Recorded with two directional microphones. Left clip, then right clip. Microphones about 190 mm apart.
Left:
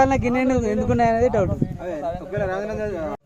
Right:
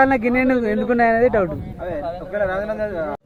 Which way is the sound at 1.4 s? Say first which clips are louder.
Right 2 dB; 35° right (ahead or behind).